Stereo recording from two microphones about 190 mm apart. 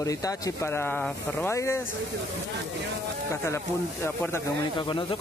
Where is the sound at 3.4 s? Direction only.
10° left (ahead or behind).